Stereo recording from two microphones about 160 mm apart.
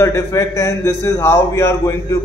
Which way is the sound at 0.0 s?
20° left (ahead or behind).